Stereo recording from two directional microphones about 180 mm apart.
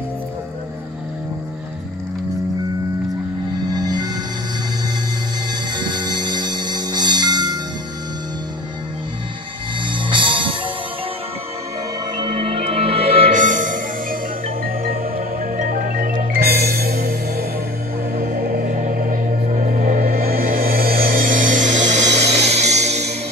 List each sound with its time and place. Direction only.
3.7 s music: 20° right (ahead or behind)
5.8 s music: 25° right (ahead or behind)
9.8 s music: 25° right (ahead or behind)
12.2 s music: 30° right (ahead or behind)